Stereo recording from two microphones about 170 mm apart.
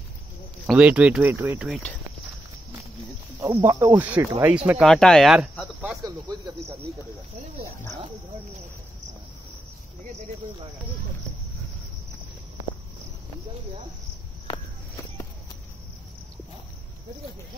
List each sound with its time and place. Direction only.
0.7 s speech: 5° right (ahead or behind)
3.3 s speech: 15° right (ahead or behind)
4.8 s speech: 5° left (ahead or behind)
6.0 s speech: 25° right (ahead or behind)